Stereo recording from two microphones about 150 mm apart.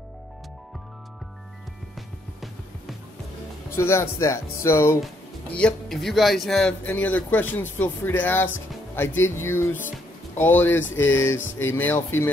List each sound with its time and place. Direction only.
3.7 s speech: 15° left (ahead or behind)